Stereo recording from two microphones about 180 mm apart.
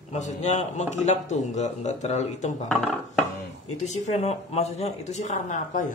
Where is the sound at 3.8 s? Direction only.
40° left (ahead or behind).